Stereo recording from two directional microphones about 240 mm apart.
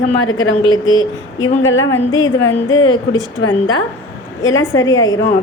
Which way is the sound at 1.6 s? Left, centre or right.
Left.